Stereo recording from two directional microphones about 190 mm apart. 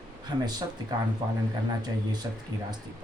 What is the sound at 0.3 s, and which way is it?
Speech, 20° right (ahead or behind).